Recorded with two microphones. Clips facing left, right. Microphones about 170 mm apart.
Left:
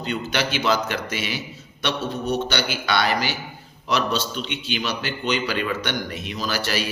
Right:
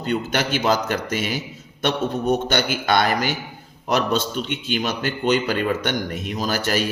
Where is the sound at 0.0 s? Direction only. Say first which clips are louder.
Right 3 dB; 50° right (ahead or behind).